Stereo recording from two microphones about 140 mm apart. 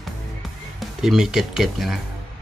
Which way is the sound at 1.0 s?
Centre (ahead or behind).